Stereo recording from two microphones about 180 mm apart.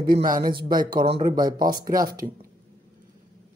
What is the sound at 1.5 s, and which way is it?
Speech, 50° right (ahead or behind).